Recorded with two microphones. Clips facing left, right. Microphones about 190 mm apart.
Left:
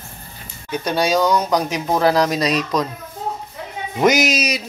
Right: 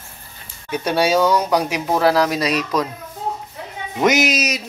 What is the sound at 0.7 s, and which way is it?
Speech, 10° right (ahead or behind).